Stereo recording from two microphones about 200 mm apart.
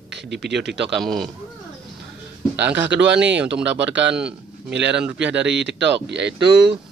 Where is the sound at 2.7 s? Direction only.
65° right (ahead or behind).